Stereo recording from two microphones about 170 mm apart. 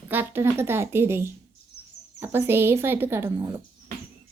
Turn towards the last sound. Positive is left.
turn(degrees=-15)  # may be behind; listen again after turning